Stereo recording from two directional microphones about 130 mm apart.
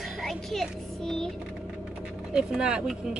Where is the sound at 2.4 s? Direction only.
5° right (ahead or behind).